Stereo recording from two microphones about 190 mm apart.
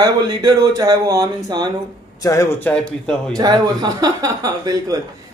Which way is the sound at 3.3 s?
20° right (ahead or behind).